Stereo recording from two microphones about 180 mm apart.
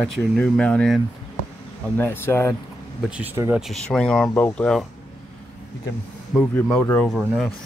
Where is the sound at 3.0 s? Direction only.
10° right (ahead or behind).